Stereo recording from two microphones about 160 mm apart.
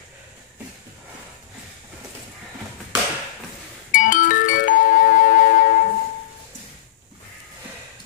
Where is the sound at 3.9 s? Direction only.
55° left (ahead or behind).